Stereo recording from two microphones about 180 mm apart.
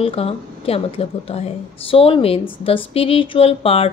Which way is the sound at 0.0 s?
30° left (ahead or behind).